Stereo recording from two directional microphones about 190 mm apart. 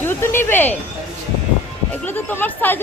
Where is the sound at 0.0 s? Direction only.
10° left (ahead or behind).